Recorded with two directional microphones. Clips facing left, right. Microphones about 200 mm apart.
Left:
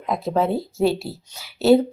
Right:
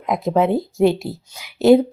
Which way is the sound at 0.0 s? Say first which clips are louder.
Right 3 dB; 15° right (ahead or behind).